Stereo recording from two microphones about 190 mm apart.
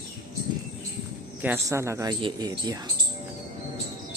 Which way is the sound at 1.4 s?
10° right (ahead or behind).